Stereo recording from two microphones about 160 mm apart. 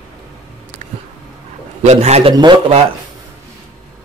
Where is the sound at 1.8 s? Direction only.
45° right (ahead or behind).